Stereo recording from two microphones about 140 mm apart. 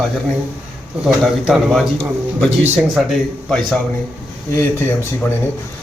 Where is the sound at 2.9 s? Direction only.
Centre (ahead or behind).